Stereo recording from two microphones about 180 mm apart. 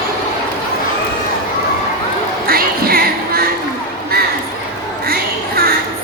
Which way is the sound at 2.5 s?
55° right (ahead or behind).